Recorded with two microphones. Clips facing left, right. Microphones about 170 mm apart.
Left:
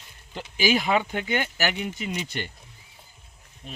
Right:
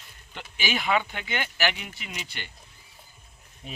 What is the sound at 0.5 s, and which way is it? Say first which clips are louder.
Speech: left 4 dB; 40° left (ahead or behind).